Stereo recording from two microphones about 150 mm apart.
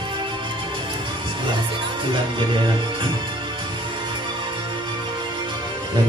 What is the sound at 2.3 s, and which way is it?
Speech, 30° right (ahead or behind).